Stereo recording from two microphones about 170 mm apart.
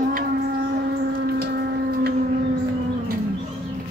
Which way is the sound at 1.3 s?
65° right (ahead or behind).